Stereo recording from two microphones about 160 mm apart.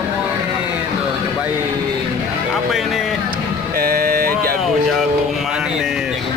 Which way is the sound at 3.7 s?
65° right (ahead or behind).